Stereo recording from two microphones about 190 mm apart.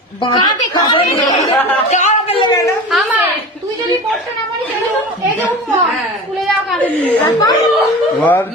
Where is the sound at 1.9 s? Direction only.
40° left (ahead or behind).